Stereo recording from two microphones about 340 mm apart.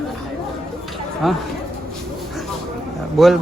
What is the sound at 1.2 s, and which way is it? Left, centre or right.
Speech, centre.